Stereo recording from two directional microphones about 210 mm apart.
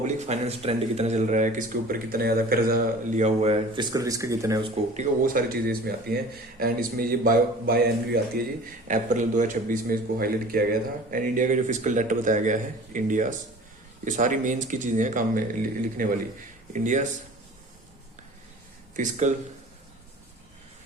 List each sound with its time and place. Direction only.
0.0 s speech: 30° right (ahead or behind)
4.9 s a man's voice: 40° right (ahead or behind)
18.9 s speech: 35° right (ahead or behind)